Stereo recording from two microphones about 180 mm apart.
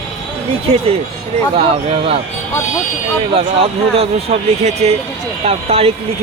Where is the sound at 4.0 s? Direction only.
35° right (ahead or behind).